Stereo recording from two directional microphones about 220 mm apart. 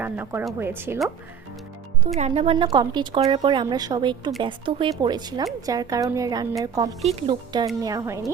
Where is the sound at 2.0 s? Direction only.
30° right (ahead or behind).